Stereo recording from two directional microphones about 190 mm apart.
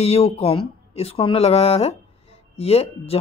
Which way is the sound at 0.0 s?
30° left (ahead or behind).